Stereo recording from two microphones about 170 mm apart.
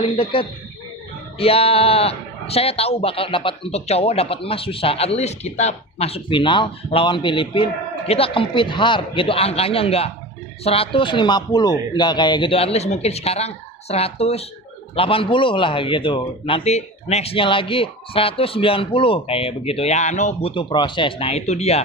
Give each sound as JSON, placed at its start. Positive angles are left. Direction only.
{"t": 0.0, "sound": "speech", "side_deg": 30}
{"t": 20.5, "sound": "speech", "side_deg": 30}